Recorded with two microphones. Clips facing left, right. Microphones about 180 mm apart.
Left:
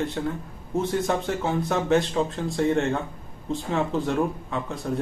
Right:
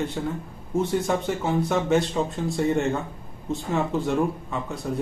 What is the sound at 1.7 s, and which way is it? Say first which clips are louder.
Speech: left 2 dB; 5° right (ahead or behind).